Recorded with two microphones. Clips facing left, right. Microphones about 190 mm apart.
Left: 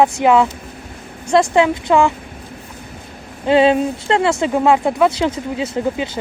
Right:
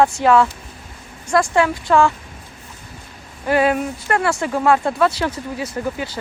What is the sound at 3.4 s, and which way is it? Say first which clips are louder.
Speech: left 5 dB; 25° left (ahead or behind).